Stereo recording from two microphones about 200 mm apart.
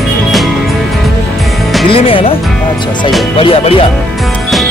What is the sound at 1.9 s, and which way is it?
Speech, 25° left (ahead or behind).